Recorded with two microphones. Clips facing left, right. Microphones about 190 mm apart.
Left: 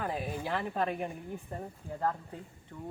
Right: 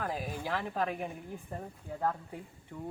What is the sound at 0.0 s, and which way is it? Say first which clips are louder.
Speech: left 1 dB; centre (ahead or behind).